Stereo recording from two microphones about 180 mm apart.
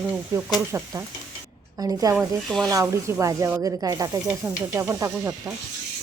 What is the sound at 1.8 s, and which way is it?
Speech, 20° right (ahead or behind).